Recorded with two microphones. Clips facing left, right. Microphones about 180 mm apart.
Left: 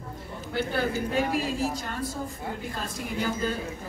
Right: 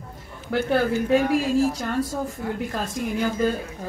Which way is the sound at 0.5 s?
75° right (ahead or behind).